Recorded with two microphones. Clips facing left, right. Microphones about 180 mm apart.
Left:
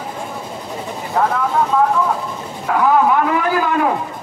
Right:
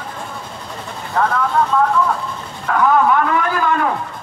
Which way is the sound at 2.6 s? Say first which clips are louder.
Even; 10° left (ahead or behind).